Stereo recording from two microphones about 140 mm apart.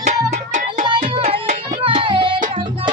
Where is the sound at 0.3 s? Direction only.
65° right (ahead or behind).